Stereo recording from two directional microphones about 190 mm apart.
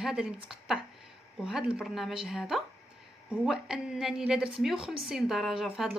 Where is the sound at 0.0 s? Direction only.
5° right (ahead or behind).